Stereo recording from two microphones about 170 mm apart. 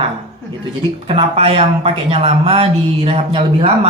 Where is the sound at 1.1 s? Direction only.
35° right (ahead or behind).